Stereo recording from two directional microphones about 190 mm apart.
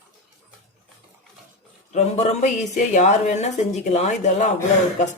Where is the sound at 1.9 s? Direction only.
35° left (ahead or behind).